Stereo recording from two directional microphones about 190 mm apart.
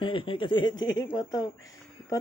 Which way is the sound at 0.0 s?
25° left (ahead or behind).